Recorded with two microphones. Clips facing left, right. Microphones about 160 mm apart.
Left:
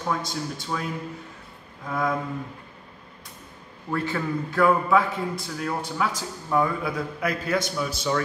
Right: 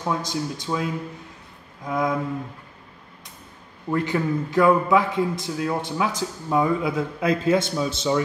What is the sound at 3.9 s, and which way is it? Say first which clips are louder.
A man's voice: right 4 dB; 15° right (ahead or behind).